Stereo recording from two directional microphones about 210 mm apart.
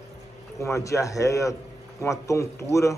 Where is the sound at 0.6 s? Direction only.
15° left (ahead or behind).